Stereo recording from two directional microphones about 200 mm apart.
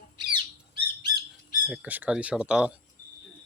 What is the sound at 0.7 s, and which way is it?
Bird, 20° right (ahead or behind).